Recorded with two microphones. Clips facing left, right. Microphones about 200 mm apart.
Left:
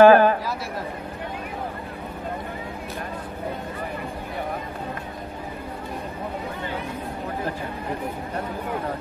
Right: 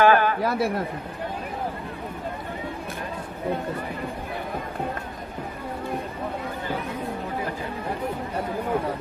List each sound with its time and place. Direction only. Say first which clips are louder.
0.0 s a man's voice: left 6 dB; 35° left (ahead or behind)
0.4 s a man's voice: right 7 dB; 60° right (ahead or behind)